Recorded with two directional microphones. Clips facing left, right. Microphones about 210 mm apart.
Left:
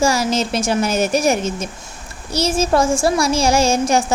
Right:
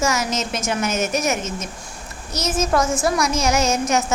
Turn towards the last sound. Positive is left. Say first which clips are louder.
# left 4 dB
turn(degrees=30)  # may be behind; listen again after turning